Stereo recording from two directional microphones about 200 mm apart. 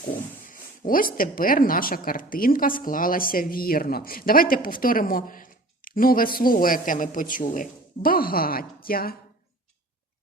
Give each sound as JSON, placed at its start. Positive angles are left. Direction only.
{"t": 0.4, "sound": "a woman's voice", "side_deg": 40}